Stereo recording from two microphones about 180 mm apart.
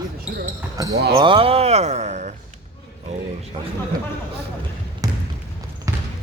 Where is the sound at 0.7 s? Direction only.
20° right (ahead or behind); by 3.2 s 40° right (ahead or behind).